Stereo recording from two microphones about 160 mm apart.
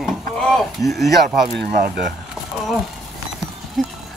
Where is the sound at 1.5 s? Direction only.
80° right.